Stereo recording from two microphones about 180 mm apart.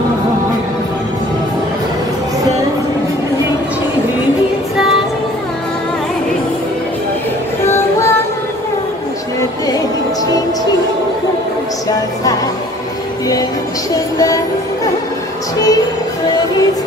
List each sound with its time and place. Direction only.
7.6 s female singing: 15° left (ahead or behind)
14.1 s music: 20° left (ahead or behind)